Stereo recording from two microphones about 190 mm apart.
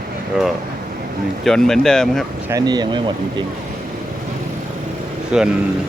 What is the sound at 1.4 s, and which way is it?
Speech, centre (ahead or behind).